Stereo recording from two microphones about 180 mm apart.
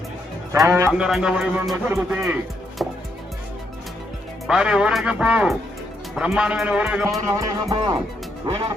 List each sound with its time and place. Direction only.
0.5 s a man's voice: 15° right (ahead or behind)
4.4 s a man's voice: 5° right (ahead or behind)
7.3 s speech: 20° right (ahead or behind)